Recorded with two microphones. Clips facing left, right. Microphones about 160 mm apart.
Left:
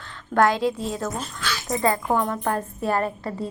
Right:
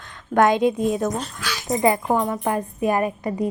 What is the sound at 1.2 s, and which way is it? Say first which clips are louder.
Speech: right 2 dB; 5° right (ahead or behind).